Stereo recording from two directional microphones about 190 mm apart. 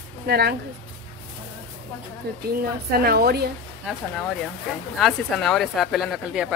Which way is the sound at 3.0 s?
55° right (ahead or behind).